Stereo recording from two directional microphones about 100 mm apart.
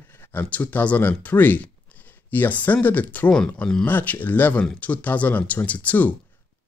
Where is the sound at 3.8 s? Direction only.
20° left (ahead or behind).